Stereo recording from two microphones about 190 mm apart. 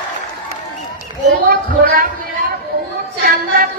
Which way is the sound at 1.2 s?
50° right (ahead or behind).